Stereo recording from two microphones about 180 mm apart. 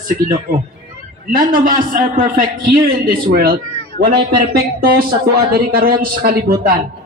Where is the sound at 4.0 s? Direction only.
55° right (ahead or behind).